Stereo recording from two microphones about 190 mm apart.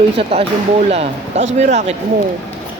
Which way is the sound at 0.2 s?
30° right (ahead or behind).